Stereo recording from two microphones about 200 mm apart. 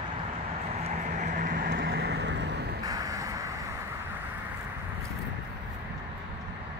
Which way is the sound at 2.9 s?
15° right (ahead or behind).